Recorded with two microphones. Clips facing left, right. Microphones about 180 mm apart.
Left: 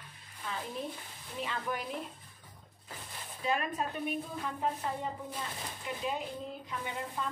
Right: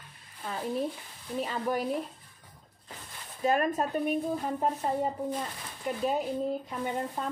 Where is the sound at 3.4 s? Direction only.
45° right (ahead or behind).